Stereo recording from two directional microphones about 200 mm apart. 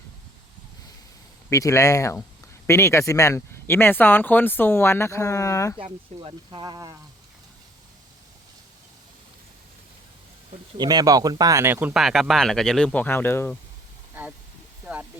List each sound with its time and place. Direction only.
1.5 s speech: 15° left (ahead or behind)
5.8 s speech: 25° right (ahead or behind)
10.8 s speech: 20° right (ahead or behind); by 13.6 s 10° left (ahead or behind)